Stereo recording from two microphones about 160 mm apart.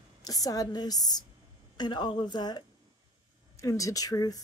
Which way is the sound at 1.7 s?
30° left (ahead or behind).